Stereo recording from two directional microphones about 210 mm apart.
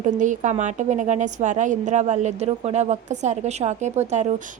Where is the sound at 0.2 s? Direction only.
35° right (ahead or behind).